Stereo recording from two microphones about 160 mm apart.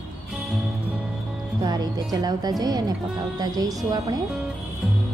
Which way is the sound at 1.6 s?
25° right (ahead or behind).